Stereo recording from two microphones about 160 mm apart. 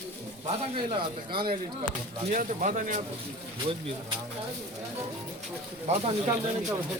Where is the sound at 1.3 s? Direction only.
70° right (ahead or behind).